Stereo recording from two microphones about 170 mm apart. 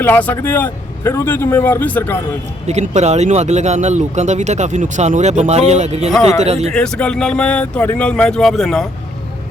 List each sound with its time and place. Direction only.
0.0 s speech: 10° left (ahead or behind)
2.6 s speech: 40° right (ahead or behind)
6.1 s speech: centre (ahead or behind)
6.4 s speech: 40° right (ahead or behind)
6.7 s speech: 5° left (ahead or behind)